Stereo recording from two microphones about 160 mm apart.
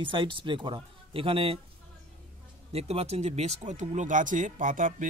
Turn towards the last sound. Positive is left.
turn(degrees=-55)  # may be behind; listen again after turning